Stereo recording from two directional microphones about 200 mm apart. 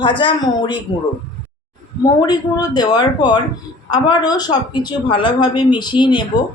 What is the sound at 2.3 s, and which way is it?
Speech, 20° left (ahead or behind).